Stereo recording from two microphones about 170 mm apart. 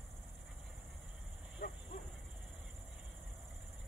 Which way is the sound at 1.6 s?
70° left (ahead or behind).